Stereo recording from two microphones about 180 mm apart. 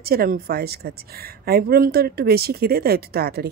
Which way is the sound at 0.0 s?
55° right (ahead or behind).